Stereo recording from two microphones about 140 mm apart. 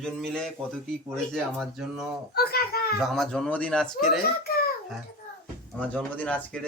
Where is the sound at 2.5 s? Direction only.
90° left.